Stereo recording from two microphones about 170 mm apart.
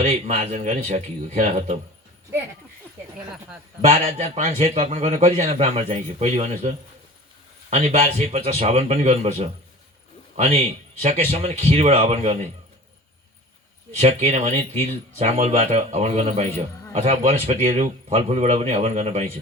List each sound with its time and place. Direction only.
0.1 s speech: 40° right (ahead or behind)
3.8 s a man's voice: 35° right (ahead or behind)
14.0 s a man's voice: 40° right (ahead or behind)